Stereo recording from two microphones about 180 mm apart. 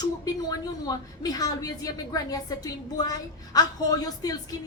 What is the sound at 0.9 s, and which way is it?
Speech, 20° left (ahead or behind).